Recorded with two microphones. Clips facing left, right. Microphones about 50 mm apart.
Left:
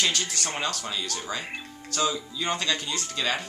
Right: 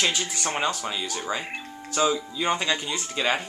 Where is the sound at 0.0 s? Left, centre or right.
Centre.